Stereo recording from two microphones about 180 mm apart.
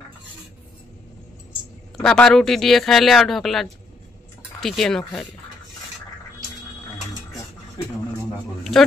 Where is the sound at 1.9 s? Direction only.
5° left (ahead or behind).